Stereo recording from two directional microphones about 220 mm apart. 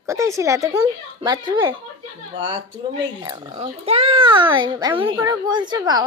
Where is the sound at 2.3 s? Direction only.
60° right (ahead or behind).